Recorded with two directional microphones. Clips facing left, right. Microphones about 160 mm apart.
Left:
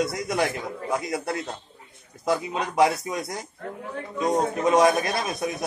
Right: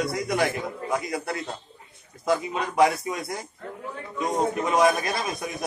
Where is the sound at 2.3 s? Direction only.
20° left (ahead or behind).